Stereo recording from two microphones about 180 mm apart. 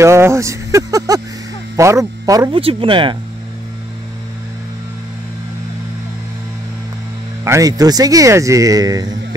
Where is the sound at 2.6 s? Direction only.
30° right (ahead or behind).